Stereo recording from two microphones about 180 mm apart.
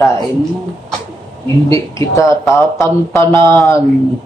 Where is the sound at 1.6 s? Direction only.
15° left (ahead or behind).